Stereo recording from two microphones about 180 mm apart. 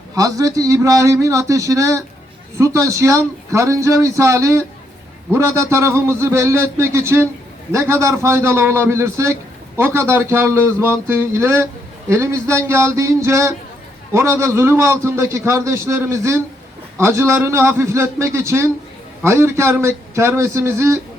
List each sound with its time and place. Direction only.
0.1 s a man's voice: 20° right (ahead or behind)